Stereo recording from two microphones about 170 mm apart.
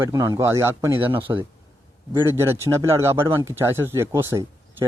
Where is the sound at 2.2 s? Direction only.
15° right (ahead or behind).